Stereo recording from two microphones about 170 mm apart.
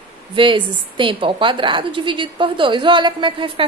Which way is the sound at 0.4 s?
30° right (ahead or behind).